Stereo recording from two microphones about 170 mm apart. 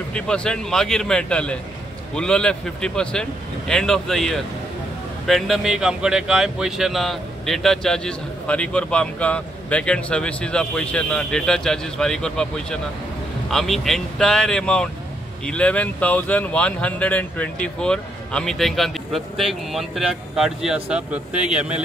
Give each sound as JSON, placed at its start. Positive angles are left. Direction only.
{"t": 0.1, "sound": "speech", "side_deg": 5}